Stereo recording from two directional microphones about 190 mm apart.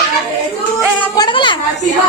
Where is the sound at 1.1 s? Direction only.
25° left (ahead or behind).